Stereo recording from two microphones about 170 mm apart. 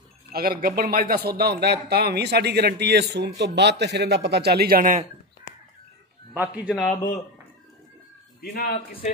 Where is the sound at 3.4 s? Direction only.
90° right; by 5.0 s 55° right (ahead or behind).